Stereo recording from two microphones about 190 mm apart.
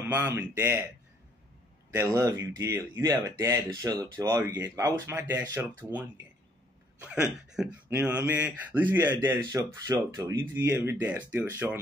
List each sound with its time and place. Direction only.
0.1 s speech: 10° right (ahead or behind)
2.0 s speech: 15° right (ahead or behind)
7.0 s speech: 5° right (ahead or behind)